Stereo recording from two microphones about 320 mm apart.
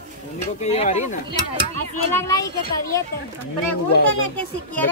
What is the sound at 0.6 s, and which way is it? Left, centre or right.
Speech, centre.